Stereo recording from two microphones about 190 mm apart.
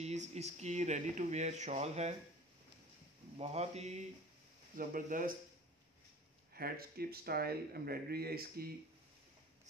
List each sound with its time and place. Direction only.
0.0 s speech: 35° right (ahead or behind)
3.3 s speech: 35° right (ahead or behind)
4.7 s speech: 45° right (ahead or behind)
6.5 s speech: 55° right (ahead or behind)